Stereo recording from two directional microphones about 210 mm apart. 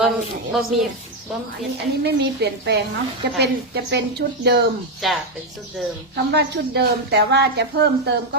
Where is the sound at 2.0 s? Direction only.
55° right (ahead or behind).